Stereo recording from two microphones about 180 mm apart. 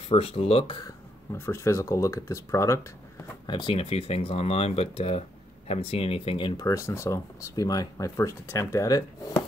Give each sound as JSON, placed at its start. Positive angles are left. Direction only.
{"t": 0.1, "sound": "speech", "side_deg": 35}
{"t": 1.3, "sound": "speech", "side_deg": 15}
{"t": 3.4, "sound": "speech", "side_deg": 30}